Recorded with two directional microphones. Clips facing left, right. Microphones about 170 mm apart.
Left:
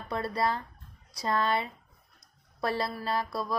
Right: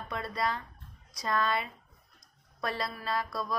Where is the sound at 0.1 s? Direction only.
35° left (ahead or behind).